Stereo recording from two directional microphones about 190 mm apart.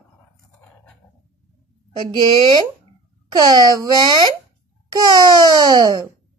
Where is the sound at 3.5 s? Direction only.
20° right (ahead or behind).